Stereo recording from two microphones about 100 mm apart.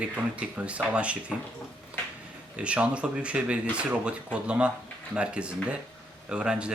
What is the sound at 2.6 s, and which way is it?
Speech, 10° right (ahead or behind).